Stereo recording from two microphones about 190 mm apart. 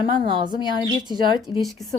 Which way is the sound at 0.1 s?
25° right (ahead or behind).